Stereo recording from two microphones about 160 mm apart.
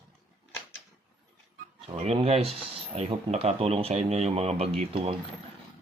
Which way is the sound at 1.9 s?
35° right (ahead or behind).